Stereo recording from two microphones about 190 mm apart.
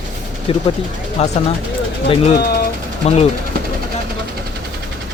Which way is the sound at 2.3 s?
55° left (ahead or behind).